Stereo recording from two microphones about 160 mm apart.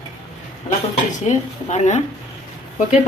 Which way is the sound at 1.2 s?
45° left (ahead or behind).